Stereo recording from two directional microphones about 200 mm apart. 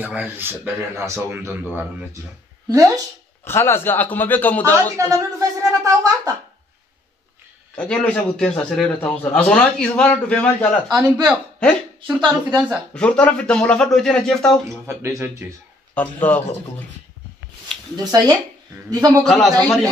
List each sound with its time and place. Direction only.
0.0 s speech: 10° right (ahead or behind)
3.4 s speech: 10° left (ahead or behind)
4.9 s speech: 15° right (ahead or behind)
7.7 s a man's voice: 5° left (ahead or behind)
10.9 s speech: 20° right (ahead or behind)
11.2 s a man's voice: 5° right (ahead or behind)
14.9 s speech: 15° right (ahead or behind)
15.9 s speech: 5° left (ahead or behind)
17.9 s speech: 20° right (ahead or behind)
19.1 s a man's voice: 5° left (ahead or behind)